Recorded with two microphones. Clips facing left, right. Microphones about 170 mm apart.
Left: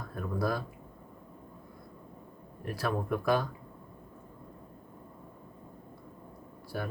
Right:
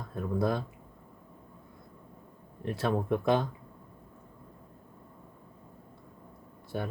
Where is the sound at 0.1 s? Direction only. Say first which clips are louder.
Right 3 dB; 25° right (ahead or behind).